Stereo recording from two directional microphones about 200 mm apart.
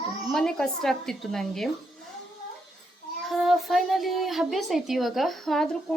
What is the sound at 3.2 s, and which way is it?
A woman's voice, centre (ahead or behind).